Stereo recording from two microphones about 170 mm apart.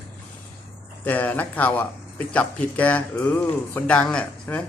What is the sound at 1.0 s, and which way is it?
Speech, 10° left (ahead or behind).